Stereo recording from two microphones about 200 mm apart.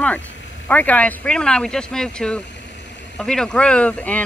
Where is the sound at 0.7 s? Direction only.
5° left (ahead or behind).